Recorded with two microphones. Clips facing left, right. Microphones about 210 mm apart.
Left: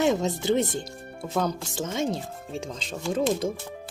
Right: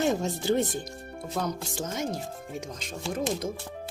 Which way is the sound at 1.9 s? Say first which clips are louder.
Left 5 dB; 25° left (ahead or behind).